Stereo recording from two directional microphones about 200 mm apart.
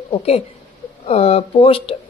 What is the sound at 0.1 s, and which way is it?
Speech, 30° left (ahead or behind).